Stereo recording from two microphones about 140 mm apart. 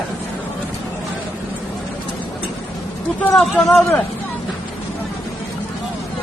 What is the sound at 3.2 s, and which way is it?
Speech, 10° left (ahead or behind).